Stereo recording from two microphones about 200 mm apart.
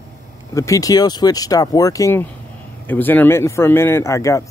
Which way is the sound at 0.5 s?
15° left (ahead or behind).